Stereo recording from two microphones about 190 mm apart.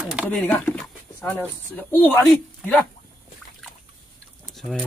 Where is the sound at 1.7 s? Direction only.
10° left (ahead or behind).